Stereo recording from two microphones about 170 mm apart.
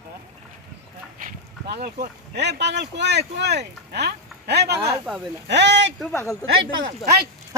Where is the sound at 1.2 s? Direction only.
65° right (ahead or behind).